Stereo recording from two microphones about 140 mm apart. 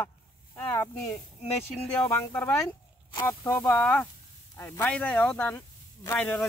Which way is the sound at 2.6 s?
20° left (ahead or behind).